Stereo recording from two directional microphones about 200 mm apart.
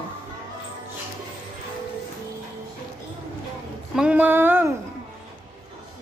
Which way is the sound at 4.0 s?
5° right (ahead or behind).